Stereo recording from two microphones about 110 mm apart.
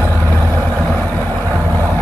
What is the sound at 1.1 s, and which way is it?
Vehicle, 15° left (ahead or behind).